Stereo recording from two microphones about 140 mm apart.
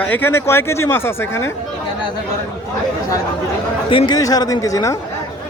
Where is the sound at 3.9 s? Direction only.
40° left (ahead or behind).